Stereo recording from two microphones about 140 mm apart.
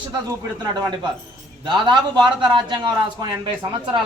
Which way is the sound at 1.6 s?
35° right (ahead or behind).